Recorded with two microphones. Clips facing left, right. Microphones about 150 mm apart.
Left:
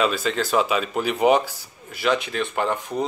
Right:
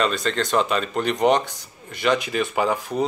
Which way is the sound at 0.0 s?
5° left (ahead or behind).